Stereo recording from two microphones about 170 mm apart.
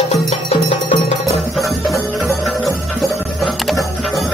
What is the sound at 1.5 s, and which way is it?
Music, centre (ahead or behind).